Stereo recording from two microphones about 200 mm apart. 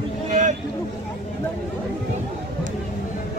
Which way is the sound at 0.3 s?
35° right (ahead or behind).